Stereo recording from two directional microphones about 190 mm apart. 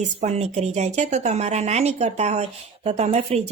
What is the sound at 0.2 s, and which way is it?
A woman's voice, 35° right (ahead or behind).